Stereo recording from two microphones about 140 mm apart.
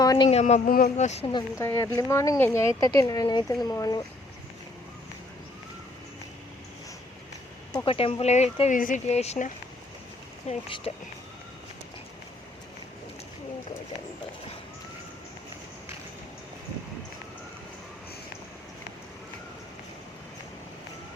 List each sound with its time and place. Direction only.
0.0 s a sound: 25° left (ahead or behind)
0.3 s speech: 50° left (ahead or behind)
1.3 s speech: 30° left (ahead or behind)
1.6 s speech: 20° left (ahead or behind)
7.9 s speech: 45° left (ahead or behind)